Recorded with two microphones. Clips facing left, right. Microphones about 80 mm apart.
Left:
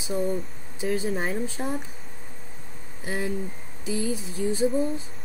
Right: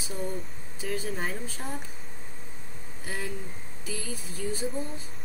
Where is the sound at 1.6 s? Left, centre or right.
Left.